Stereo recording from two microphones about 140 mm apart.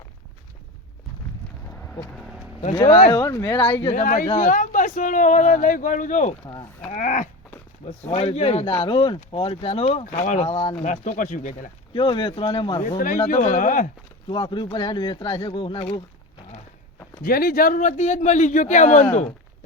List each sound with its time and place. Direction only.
3.2 s speech: 25° left (ahead or behind)
3.9 s speech: 70° left (ahead or behind)
4.3 s speech: 60° left (ahead or behind)
6.5 s speech: 35° left (ahead or behind)
6.9 s speech: 60° left (ahead or behind)
7.9 s speech: 45° left (ahead or behind)
10.1 s speech: 60° left (ahead or behind)
11.9 s speech: 35° left (ahead or behind)
13.1 s speech: 55° left (ahead or behind); by 13.9 s 70° left (ahead or behind)
14.3 s speech: 35° left (ahead or behind)
17.2 s speech: 90° left; by 19.0 s 60° left (ahead or behind)